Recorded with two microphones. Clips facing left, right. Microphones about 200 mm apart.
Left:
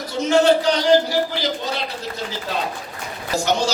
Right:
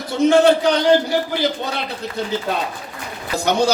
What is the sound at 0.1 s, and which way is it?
A man's voice, 55° right (ahead or behind).